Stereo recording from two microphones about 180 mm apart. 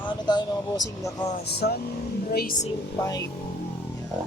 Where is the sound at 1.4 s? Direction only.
65° left (ahead or behind).